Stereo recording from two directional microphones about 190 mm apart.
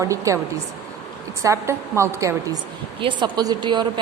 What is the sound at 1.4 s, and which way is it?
A woman's voice, 15° right (ahead or behind).